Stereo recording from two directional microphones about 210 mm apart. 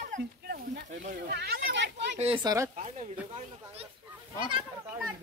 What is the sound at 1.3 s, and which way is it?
Speech, 50° right (ahead or behind).